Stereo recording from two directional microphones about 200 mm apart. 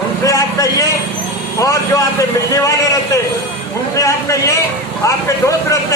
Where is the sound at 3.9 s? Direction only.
15° left (ahead or behind).